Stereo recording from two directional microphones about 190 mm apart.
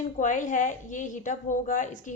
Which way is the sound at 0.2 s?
40° left (ahead or behind).